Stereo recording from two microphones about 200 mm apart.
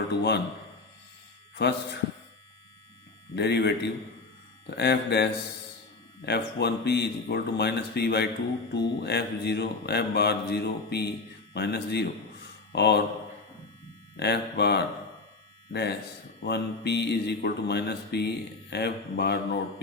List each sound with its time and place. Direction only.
0.1 s mantra: 55° left (ahead or behind)
1.5 s mantra: 55° left (ahead or behind)
3.3 s mantra: 60° left (ahead or behind)
14.2 s mantra: 55° left (ahead or behind)